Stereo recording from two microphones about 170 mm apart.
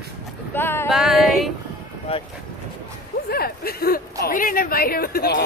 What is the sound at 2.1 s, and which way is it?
Speech, 35° left (ahead or behind).